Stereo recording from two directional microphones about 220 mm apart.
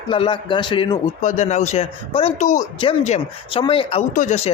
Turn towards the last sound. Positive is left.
turn(degrees=30)  # may be behind; listen again after turning